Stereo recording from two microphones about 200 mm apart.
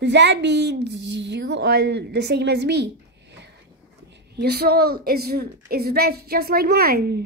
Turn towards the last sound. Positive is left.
turn(degrees=-50)  # may be behind; listen again after turning